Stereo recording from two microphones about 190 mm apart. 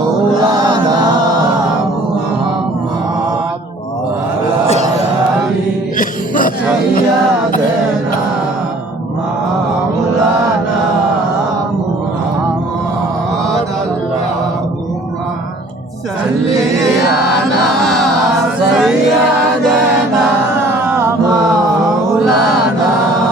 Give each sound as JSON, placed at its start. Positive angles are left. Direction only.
{"t": 6.0, "sound": "music", "side_deg": 45}
{"t": 18.4, "sound": "music", "side_deg": -5}